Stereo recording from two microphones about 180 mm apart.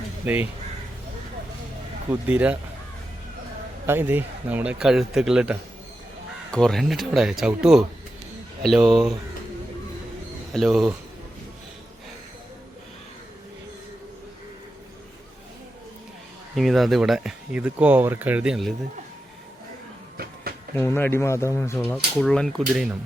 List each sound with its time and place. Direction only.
0.3 s speech: 5° right (ahead or behind)
2.0 s speech: 10° right (ahead or behind)
3.8 s speech: 10° right (ahead or behind)
10.5 s speech: centre (ahead or behind)
16.6 s speech: centre (ahead or behind)
20.7 s speech: 10° left (ahead or behind)
21.9 s speech: 5° left (ahead or behind)